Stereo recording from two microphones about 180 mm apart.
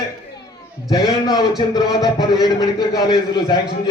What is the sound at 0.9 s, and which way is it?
A man's voice, 20° left (ahead or behind).